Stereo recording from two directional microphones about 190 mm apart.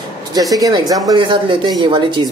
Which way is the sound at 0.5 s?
20° right (ahead or behind).